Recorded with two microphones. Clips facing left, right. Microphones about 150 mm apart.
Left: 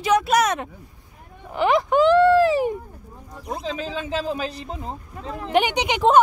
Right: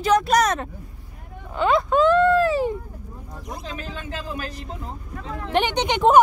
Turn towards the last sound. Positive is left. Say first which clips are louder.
# right 1 dB
turn(degrees=5)  # may be behind; listen again after turning